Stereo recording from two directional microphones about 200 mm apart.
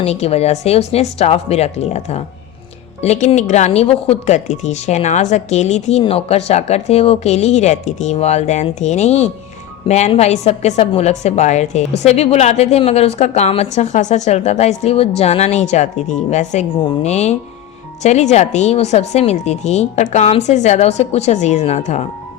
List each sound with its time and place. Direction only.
0.0 s speech: 30° left (ahead or behind)